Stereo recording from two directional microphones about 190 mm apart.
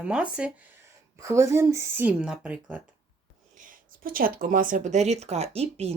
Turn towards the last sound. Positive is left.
turn(degrees=-35)  # may be behind; listen again after turning